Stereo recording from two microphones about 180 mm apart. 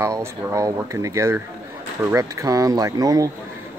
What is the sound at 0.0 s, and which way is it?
Speech, 15° right (ahead or behind).